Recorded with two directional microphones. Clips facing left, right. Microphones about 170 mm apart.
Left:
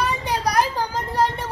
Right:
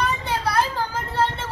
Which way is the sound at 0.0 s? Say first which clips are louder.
Left 1 dB; 15° left (ahead or behind).